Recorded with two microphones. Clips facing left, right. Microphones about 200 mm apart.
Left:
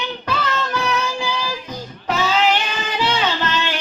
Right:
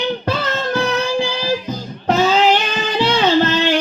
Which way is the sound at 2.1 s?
40° right (ahead or behind).